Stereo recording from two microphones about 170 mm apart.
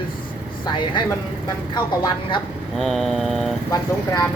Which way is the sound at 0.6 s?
25° left (ahead or behind).